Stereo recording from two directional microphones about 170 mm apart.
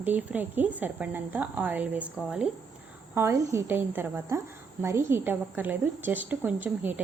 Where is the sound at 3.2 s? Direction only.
15° right (ahead or behind).